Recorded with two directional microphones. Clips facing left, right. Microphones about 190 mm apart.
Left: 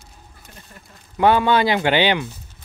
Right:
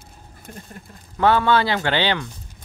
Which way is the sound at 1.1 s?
15° left (ahead or behind).